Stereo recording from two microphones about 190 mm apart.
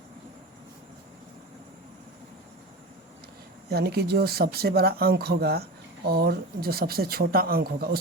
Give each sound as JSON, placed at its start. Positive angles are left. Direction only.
{"t": 3.7, "sound": "speech", "side_deg": -55}